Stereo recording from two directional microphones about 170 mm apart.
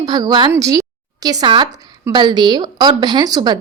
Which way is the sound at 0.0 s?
25° right (ahead or behind).